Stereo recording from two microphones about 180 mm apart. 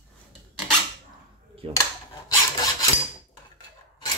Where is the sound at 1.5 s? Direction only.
30° right (ahead or behind).